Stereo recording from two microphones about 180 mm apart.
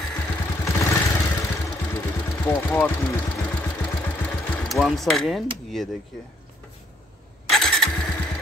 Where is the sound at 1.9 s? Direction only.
15° left (ahead or behind).